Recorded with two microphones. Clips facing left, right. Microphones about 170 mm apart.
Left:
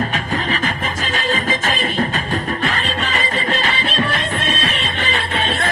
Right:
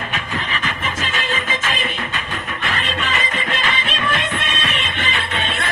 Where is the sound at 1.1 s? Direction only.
40° left (ahead or behind).